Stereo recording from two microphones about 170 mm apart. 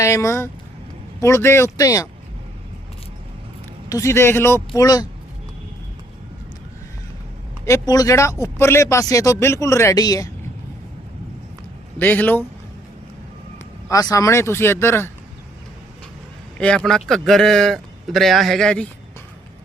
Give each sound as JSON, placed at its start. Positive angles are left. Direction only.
{"t": 0.0, "sound": "speech", "side_deg": 15}
{"t": 3.8, "sound": "speech", "side_deg": 20}
{"t": 7.6, "sound": "speech", "side_deg": 20}
{"t": 11.9, "sound": "speech", "side_deg": 10}
{"t": 13.8, "sound": "speech", "side_deg": 20}
{"t": 16.6, "sound": "a man's voice", "side_deg": 5}